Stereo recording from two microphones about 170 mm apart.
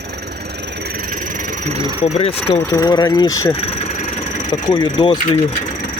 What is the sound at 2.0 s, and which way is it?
Speech, 35° left (ahead or behind).